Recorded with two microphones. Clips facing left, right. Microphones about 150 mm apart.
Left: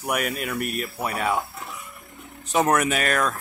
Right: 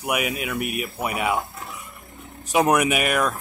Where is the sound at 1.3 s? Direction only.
Centre (ahead or behind).